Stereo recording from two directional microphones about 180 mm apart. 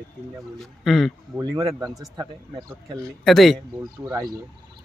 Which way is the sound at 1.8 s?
20° right (ahead or behind).